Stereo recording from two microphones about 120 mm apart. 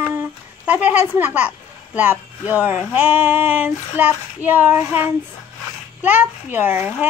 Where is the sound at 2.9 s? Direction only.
15° right (ahead or behind).